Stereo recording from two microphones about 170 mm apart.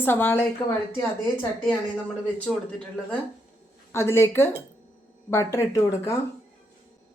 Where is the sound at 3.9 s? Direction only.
15° left (ahead or behind).